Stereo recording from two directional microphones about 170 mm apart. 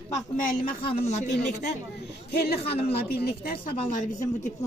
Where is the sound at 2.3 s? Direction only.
70° left (ahead or behind); by 4.3 s 50° left (ahead or behind).